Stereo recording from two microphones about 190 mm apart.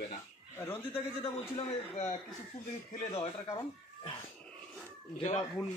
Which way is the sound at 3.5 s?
15° left (ahead or behind).